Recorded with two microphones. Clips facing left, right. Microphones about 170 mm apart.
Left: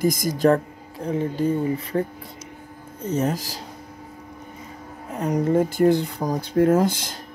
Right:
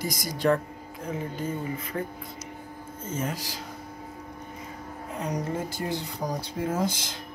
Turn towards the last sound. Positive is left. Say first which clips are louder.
# left 11 dB
turn(degrees=65)  # may be behind; listen again after turning